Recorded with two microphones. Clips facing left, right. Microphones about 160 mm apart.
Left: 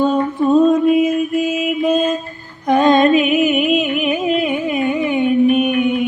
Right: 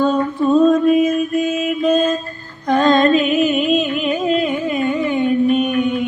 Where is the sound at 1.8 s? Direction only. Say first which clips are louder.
Right 1 dB; 20° left (ahead or behind).